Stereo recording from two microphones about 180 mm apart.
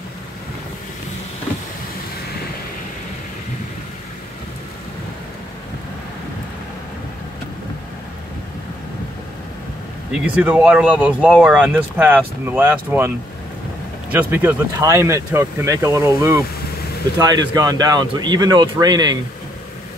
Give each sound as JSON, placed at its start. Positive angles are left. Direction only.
{"t": 10.1, "sound": "speech", "side_deg": -5}
{"t": 14.1, "sound": "speech", "side_deg": -10}